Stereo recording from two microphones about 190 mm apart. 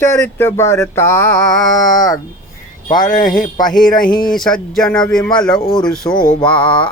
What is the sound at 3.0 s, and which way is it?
Speech, 40° left (ahead or behind).